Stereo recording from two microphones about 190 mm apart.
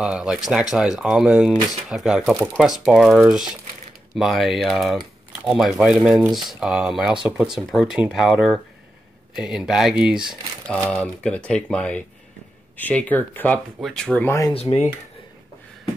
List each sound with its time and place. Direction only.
0.0 s speech: 5° right (ahead or behind); by 14.5 s 15° left (ahead or behind)
14.5 s speech: 35° left (ahead or behind)